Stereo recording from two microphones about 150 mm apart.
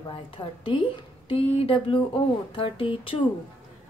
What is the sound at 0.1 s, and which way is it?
A woman's voice, 35° left (ahead or behind).